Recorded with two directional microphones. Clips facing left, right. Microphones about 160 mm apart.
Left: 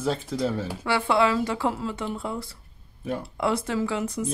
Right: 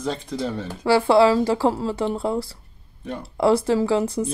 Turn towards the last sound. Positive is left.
turn(degrees=-30)  # may be behind; listen again after turning